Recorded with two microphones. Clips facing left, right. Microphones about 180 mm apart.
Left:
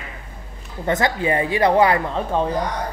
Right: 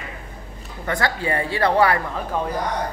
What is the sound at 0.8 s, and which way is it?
Speech, 20° left (ahead or behind).